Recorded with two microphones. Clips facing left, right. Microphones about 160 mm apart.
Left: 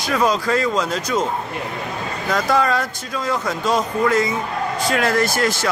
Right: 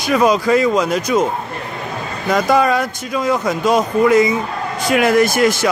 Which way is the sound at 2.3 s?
15° right (ahead or behind).